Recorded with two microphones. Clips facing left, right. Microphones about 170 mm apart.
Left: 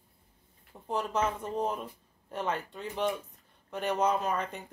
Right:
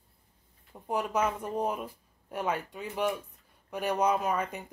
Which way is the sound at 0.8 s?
10° right (ahead or behind).